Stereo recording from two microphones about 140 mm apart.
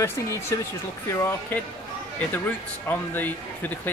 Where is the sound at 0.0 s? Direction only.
20° left (ahead or behind).